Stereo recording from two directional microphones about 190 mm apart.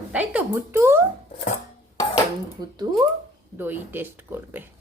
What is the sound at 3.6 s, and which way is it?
Speech, 10° right (ahead or behind).